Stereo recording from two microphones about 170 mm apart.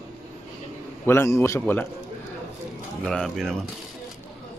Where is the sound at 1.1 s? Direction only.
15° left (ahead or behind).